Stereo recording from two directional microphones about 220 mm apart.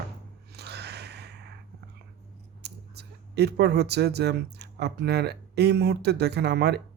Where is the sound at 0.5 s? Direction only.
50° right (ahead or behind).